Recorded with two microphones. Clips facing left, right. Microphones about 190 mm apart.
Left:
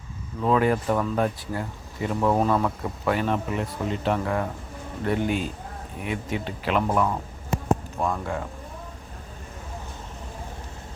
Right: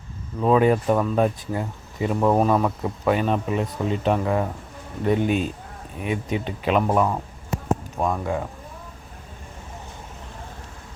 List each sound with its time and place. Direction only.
0.4 s speech: 20° right (ahead or behind)